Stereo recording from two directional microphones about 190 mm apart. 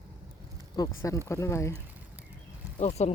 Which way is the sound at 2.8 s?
35° left (ahead or behind).